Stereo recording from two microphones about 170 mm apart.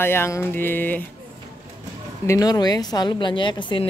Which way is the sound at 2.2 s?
20° left (ahead or behind).